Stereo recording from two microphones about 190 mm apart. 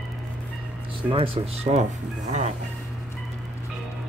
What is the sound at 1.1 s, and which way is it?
Speech, 30° right (ahead or behind).